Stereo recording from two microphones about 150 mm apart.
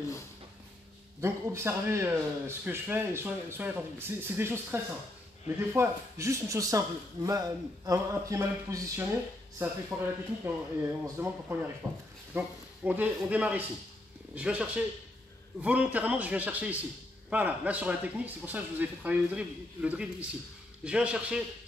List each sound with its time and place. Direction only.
1.2 s speech: 15° right (ahead or behind)